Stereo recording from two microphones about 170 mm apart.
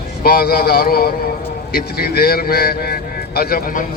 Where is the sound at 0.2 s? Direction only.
60° left (ahead or behind).